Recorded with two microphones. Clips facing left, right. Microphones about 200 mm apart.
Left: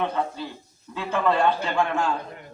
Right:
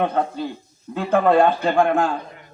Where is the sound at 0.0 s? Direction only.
55° right (ahead or behind).